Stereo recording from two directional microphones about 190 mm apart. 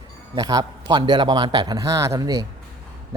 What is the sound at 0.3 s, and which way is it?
Speech, 20° right (ahead or behind).